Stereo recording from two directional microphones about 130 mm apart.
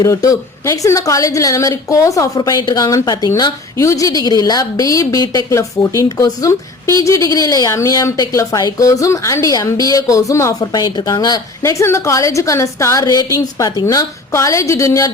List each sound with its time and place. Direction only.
0.0 s a woman's voice: 25° left (ahead or behind)